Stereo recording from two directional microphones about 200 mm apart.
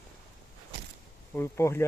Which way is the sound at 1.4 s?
10° left (ahead or behind).